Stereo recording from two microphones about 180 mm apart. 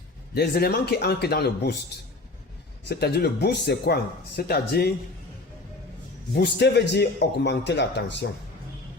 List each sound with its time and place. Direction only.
0.3 s speech: 60° left (ahead or behind)
2.9 s speech: 60° left (ahead or behind)
6.3 s a man's voice: 70° left (ahead or behind)